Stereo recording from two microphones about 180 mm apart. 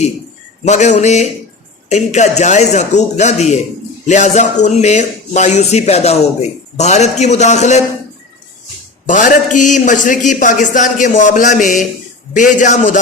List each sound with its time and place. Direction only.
0.6 s speech: 40° left (ahead or behind)
9.0 s a man's voice: 45° left (ahead or behind)